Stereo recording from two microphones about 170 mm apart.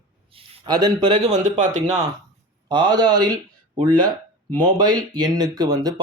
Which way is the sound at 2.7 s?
25° right (ahead or behind).